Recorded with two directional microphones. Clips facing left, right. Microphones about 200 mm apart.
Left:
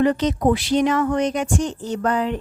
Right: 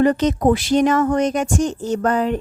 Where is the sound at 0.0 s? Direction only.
45° right (ahead or behind).